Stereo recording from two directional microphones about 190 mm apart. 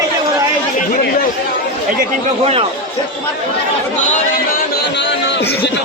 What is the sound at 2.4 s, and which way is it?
Speech, 30° right (ahead or behind).